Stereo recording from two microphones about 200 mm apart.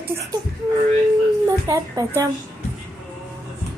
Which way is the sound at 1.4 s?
15° right (ahead or behind).